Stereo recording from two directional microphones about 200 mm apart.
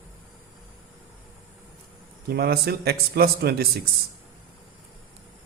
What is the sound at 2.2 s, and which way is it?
A man's voice, 50° right (ahead or behind).